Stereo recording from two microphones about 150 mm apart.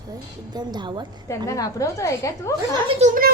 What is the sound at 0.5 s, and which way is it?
Speech, 30° right (ahead or behind).